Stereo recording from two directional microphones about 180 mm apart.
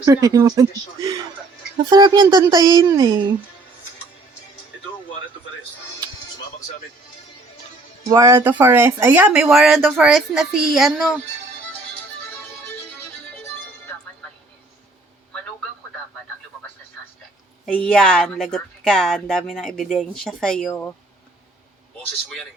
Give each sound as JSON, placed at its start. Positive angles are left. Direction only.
{"t": 0.0, "sound": "speech", "side_deg": -20}
{"t": 2.2, "sound": "a sound", "side_deg": -10}
{"t": 2.5, "sound": "speech", "side_deg": -20}
{"t": 8.1, "sound": "a woman's voice", "side_deg": -15}
{"t": 17.7, "sound": "a woman's voice", "side_deg": 5}
{"t": 21.9, "sound": "a woman's voice", "side_deg": 5}